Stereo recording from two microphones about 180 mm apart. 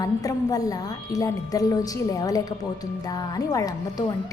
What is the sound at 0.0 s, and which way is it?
A woman's voice, 20° left (ahead or behind).